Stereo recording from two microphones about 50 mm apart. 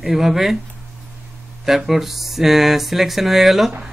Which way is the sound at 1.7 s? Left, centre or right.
Centre.